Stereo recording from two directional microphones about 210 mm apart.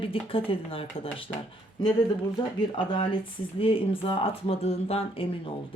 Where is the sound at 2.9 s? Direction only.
25° left (ahead or behind).